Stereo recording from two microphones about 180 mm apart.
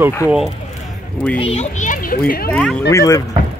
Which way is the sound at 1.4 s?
40° left (ahead or behind).